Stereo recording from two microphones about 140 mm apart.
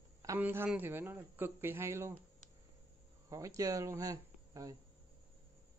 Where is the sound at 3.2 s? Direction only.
25° right (ahead or behind).